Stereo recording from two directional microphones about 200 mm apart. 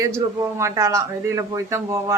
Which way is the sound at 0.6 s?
15° right (ahead or behind).